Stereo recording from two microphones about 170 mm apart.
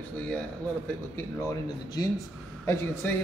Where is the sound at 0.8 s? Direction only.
15° left (ahead or behind).